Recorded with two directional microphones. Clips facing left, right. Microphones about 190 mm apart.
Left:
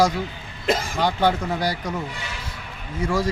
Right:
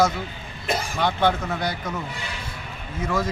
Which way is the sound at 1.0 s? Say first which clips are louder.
Left 1 dB; 10° left (ahead or behind).